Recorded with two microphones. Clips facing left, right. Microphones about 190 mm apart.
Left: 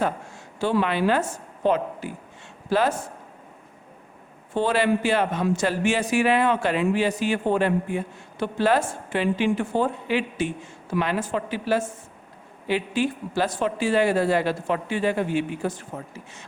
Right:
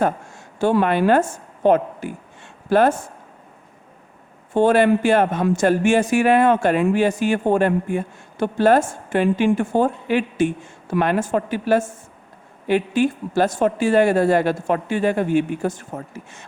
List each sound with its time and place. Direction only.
0.0 s a woman's voice: 50° right (ahead or behind)
4.5 s speech: 50° right (ahead or behind)